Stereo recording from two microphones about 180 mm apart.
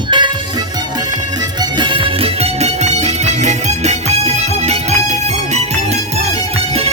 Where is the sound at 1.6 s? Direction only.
25° right (ahead or behind).